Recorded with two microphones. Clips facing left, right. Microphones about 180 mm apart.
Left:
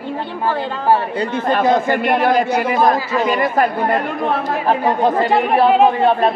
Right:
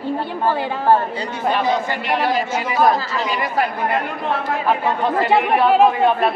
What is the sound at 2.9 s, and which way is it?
Speech, 15° left (ahead or behind).